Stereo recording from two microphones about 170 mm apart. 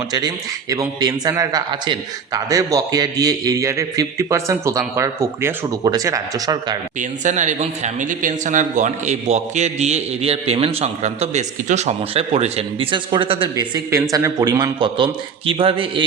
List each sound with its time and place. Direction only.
0.1 s speech: 25° right (ahead or behind)
7.0 s speech: 45° right (ahead or behind)